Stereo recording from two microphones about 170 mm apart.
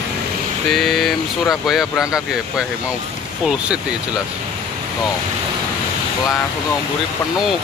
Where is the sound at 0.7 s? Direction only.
Centre (ahead or behind).